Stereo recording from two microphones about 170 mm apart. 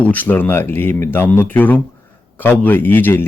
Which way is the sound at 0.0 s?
10° left (ahead or behind).